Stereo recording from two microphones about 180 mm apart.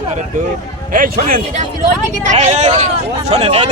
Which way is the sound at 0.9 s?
50° right (ahead or behind).